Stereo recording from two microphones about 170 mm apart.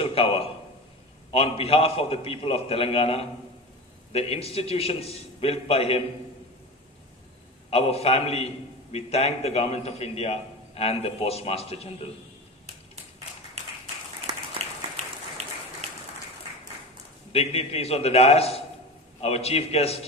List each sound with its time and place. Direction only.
0.0 s a sound: 35° left (ahead or behind)
1.3 s a man's voice: 35° left (ahead or behind)
7.7 s a man's voice: 35° left (ahead or behind)
17.3 s a man's voice: 35° left (ahead or behind)